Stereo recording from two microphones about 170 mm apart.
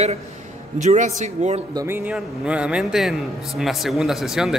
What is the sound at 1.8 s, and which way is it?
A man's voice, 10° right (ahead or behind).